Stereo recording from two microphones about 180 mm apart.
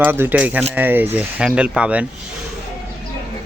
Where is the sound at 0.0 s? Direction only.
10° right (ahead or behind).